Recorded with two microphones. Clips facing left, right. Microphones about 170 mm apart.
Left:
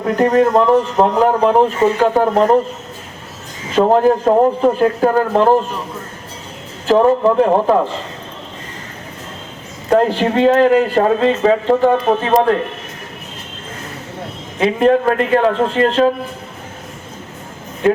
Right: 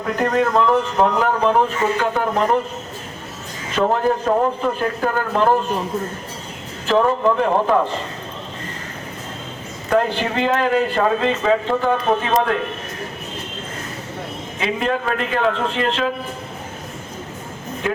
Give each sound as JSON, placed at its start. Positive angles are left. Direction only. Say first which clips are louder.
{"t": 0.2, "sound": "a man's voice", "louder": "left 5 dB", "side_deg": 35}
{"t": 3.8, "sound": "a man's voice", "louder": "left 6 dB", "side_deg": 35}
{"t": 6.8, "sound": "a man's voice", "louder": "left 5 dB", "side_deg": 35}
{"t": 9.9, "sound": "a man's voice", "louder": "left 5 dB", "side_deg": 35}
{"t": 14.6, "sound": "a man's voice", "louder": "left 9 dB", "side_deg": 45}